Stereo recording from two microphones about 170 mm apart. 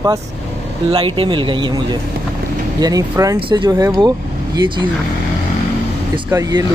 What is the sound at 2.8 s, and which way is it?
Speech, 20° right (ahead or behind).